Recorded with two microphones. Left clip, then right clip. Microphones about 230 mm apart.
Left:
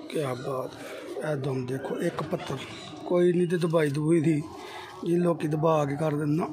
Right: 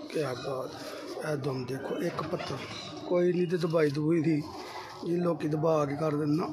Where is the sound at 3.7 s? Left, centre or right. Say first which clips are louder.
Left 2 dB; left.